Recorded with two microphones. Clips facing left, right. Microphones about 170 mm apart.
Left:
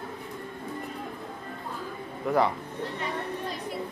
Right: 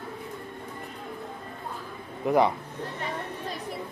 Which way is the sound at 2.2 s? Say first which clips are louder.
Right 2 dB; 20° right (ahead or behind).